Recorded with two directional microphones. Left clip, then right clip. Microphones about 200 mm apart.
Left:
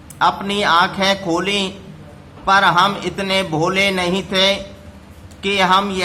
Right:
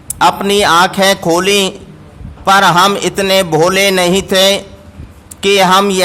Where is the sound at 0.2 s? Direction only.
55° right (ahead or behind).